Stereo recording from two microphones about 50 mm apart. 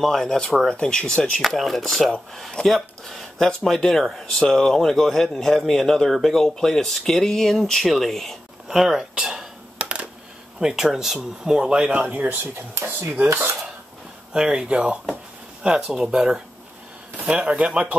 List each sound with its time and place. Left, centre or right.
0.0 s speech: centre
1.6 s speech: centre
8.6 s speech: centre
9.1 s a sound: centre
9.8 s coin: right
10.6 s speech: centre
12.1 s speech: right
13.4 s cutlery: right
14.3 s speech: centre
15.6 s speech: centre
17.2 s speech: right